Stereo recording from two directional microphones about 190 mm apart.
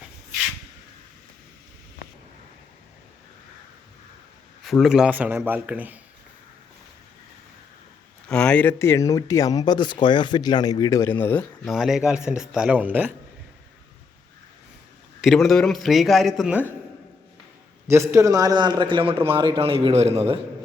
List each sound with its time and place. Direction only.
4.6 s a man's voice: centre (ahead or behind)
8.3 s speech: 5° left (ahead or behind)
15.2 s a man's voice: centre (ahead or behind)
17.8 s a man's voice: 15° right (ahead or behind); by 20.4 s 30° right (ahead or behind)